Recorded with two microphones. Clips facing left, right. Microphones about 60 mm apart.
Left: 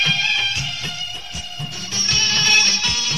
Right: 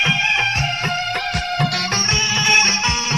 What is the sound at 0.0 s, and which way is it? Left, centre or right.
Music, right.